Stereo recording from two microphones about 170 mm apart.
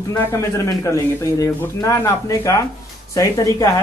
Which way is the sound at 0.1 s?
15° left (ahead or behind).